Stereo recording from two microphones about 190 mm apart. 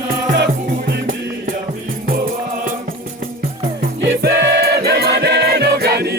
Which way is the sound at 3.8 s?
55° right (ahead or behind).